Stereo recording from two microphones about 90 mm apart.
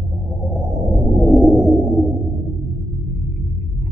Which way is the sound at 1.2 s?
Centre (ahead or behind).